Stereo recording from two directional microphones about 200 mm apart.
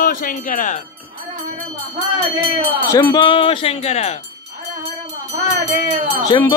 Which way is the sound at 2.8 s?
15° left (ahead or behind).